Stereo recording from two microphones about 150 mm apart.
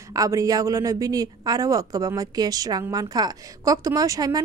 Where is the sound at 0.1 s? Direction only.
20° right (ahead or behind).